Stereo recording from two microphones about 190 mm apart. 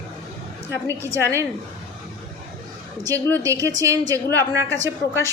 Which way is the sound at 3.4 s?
15° right (ahead or behind).